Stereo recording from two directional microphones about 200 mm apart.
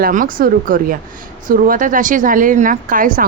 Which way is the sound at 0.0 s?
45° right (ahead or behind).